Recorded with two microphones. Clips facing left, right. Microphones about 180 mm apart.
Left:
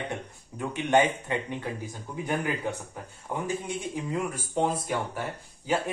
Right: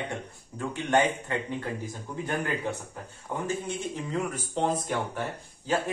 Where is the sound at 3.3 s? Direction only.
10° left (ahead or behind).